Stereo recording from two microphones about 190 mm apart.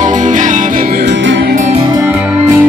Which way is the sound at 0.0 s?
40° right (ahead or behind).